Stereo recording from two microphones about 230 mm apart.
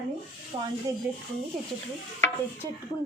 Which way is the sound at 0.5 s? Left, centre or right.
Right.